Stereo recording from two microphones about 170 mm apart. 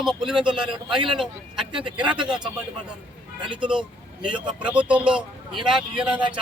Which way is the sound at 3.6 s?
5° right (ahead or behind).